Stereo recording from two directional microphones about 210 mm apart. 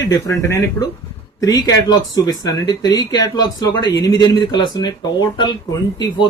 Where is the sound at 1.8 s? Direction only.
20° left (ahead or behind).